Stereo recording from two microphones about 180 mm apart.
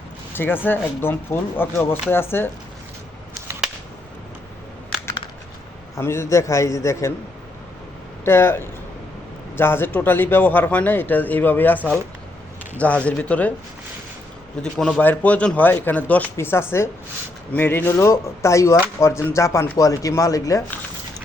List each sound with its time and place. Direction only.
0.3 s speech: 10° left (ahead or behind)
6.0 s speech: 15° left (ahead or behind)
8.2 s speech: 15° left (ahead or behind)
14.6 s speech: 5° left (ahead or behind)